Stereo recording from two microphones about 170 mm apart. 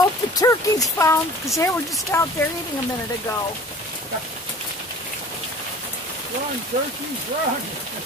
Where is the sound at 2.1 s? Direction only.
15° left (ahead or behind).